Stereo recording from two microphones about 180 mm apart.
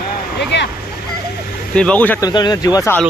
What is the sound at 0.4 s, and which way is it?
Speech, 70° left (ahead or behind).